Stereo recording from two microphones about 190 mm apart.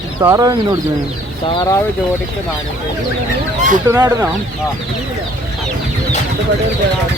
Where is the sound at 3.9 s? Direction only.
20° right (ahead or behind).